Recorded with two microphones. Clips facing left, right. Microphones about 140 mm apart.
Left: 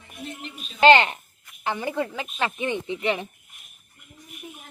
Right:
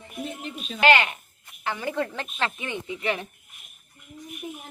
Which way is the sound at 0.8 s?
25° left (ahead or behind).